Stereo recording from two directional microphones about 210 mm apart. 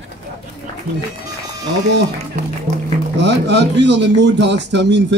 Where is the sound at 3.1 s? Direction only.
55° right (ahead or behind).